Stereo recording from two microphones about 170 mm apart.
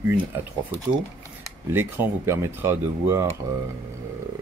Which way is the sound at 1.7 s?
15° right (ahead or behind).